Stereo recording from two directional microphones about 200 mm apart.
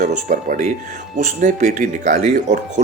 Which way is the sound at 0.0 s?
40° right (ahead or behind).